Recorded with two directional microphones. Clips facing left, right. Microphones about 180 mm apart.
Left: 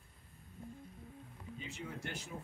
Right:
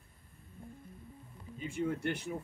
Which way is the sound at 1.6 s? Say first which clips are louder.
Right 12 dB; 50° right (ahead or behind).